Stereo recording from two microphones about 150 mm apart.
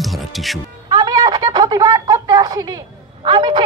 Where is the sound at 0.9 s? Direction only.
25° right (ahead or behind).